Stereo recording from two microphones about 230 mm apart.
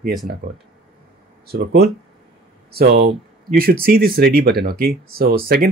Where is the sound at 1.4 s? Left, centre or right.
Right.